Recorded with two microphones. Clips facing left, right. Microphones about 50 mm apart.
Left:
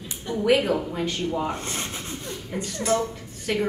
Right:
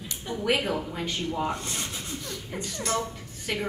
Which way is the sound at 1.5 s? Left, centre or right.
Left.